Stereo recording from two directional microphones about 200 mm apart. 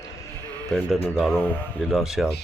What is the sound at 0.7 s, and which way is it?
Speech, 5° left (ahead or behind).